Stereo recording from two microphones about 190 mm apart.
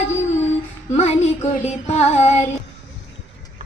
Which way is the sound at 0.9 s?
35° left (ahead or behind).